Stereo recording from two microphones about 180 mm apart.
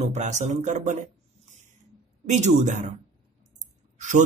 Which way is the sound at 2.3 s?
40° right (ahead or behind).